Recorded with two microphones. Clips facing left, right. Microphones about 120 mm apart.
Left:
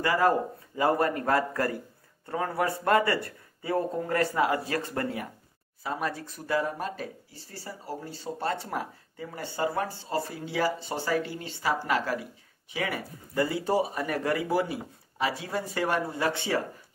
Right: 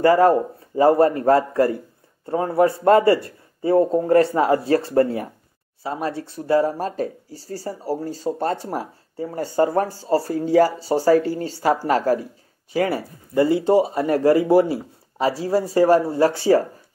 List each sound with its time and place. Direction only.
0.0 s speech: 35° right (ahead or behind)